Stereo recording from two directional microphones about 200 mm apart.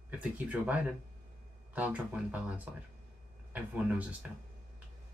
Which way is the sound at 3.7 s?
5° right (ahead or behind).